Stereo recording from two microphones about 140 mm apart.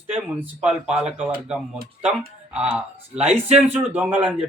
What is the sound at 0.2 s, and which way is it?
Speech, 10° right (ahead or behind).